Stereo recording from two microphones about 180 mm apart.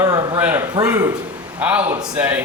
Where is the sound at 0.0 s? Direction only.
20° right (ahead or behind).